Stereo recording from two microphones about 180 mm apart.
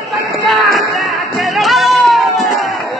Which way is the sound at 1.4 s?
Centre (ahead or behind).